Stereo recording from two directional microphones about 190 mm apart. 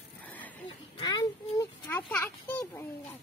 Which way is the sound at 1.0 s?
25° left (ahead or behind).